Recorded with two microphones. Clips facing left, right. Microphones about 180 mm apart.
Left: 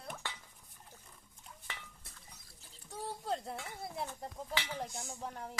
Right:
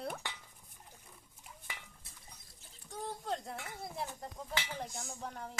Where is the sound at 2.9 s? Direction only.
5° left (ahead or behind).